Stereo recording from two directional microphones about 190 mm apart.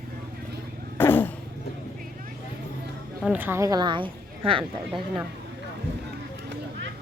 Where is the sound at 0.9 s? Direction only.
10° left (ahead or behind).